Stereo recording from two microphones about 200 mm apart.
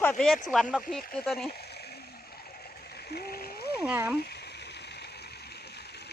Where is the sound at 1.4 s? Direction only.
50° left (ahead or behind).